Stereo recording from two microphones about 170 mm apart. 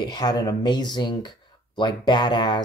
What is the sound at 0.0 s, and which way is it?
Speech, 25° left (ahead or behind).